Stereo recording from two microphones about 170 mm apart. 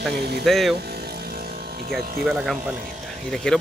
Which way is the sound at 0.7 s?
70° right (ahead or behind).